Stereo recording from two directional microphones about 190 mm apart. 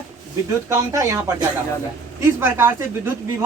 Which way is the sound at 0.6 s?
15° right (ahead or behind).